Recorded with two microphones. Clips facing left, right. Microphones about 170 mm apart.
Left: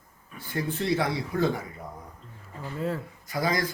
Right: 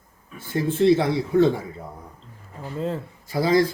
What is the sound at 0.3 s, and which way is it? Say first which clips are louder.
Speech: right 8 dB; 25° right (ahead or behind).